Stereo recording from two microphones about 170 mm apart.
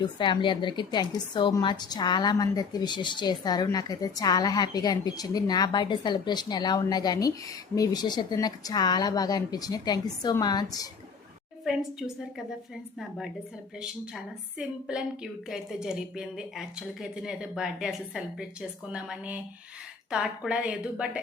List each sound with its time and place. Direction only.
0.0 s a woman's voice: 30° left (ahead or behind)
11.6 s a woman's voice: centre (ahead or behind)